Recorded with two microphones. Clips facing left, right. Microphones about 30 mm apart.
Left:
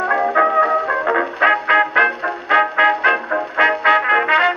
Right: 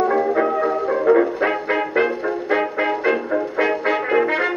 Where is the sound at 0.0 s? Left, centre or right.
Left.